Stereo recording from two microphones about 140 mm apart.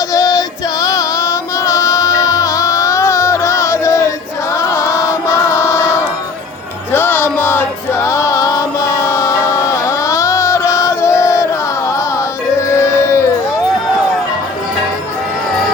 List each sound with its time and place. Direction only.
0.1 s music: 25° left (ahead or behind)
12.5 s music: 20° left (ahead or behind)